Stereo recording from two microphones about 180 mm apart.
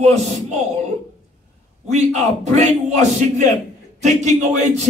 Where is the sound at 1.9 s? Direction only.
40° right (ahead or behind).